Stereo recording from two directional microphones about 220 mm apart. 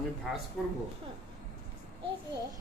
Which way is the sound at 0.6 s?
Centre (ahead or behind).